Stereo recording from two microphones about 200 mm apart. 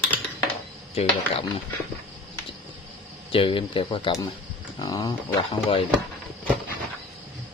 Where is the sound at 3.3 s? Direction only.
25° left (ahead or behind).